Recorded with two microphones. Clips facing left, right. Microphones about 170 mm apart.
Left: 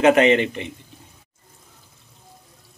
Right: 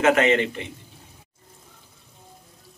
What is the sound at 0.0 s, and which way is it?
Speech, 20° left (ahead or behind).